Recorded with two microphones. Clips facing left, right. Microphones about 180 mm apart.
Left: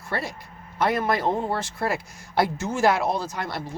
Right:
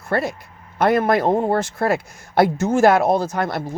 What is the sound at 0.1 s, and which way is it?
Speech, 55° right (ahead or behind).